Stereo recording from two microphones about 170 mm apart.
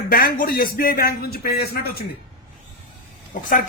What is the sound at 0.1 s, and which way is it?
Speech, 60° left (ahead or behind).